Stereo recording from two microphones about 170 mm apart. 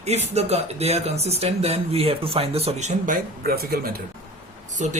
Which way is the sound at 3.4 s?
65° right (ahead or behind).